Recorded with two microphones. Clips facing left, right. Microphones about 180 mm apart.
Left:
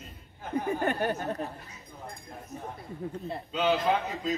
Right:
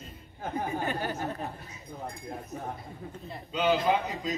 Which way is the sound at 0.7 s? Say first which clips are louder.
Left 6 dB; 60° left (ahead or behind).